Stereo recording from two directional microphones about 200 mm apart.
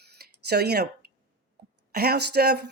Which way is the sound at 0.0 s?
55° right (ahead or behind).